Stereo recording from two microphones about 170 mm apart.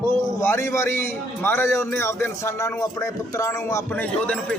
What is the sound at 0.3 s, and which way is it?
A man's voice, 15° left (ahead or behind).